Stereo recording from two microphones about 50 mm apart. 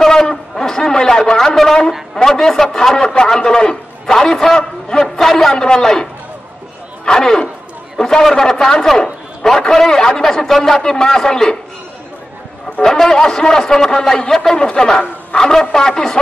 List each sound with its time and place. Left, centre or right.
0.0 s a sound: centre
2.1 s a man's voice: centre
7.1 s a man's voice: centre
12.8 s a man's voice: centre